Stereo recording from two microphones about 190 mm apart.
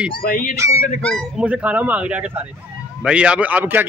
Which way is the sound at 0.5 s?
15° right (ahead or behind).